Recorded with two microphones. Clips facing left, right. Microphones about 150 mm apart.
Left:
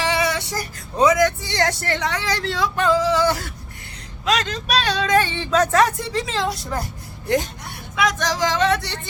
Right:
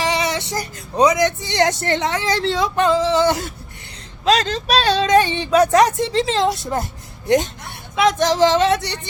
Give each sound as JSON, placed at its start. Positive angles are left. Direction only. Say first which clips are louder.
{"t": 0.0, "sound": "speech", "louder": "right 1 dB", "side_deg": -20}
{"t": 4.3, "sound": "speech", "louder": "right 4 dB", "side_deg": -30}